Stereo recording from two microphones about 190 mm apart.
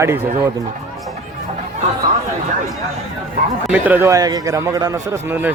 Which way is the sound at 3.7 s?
10° right (ahead or behind).